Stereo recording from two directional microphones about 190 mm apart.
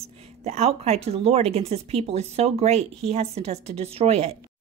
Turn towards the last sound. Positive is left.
turn(degrees=-35)  # may be behind; listen again after turning